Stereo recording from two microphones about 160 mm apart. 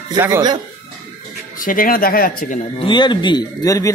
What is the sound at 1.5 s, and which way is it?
Speech, 60° left (ahead or behind).